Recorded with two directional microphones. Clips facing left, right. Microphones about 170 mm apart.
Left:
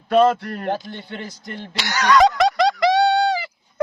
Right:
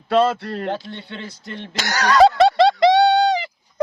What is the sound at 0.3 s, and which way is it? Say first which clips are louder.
Speech: right 2 dB; 70° right (ahead or behind).